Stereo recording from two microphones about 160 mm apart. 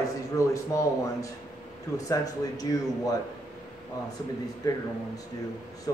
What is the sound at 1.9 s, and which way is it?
Speech, 20° left (ahead or behind).